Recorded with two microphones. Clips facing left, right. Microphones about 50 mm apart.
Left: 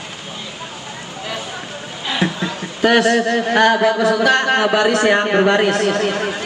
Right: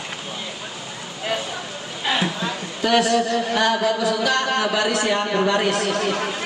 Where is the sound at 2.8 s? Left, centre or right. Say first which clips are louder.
Left 5 dB; left.